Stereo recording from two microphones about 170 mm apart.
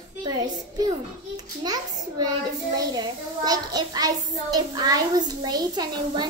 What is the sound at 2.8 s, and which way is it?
A child's voice, 20° right (ahead or behind).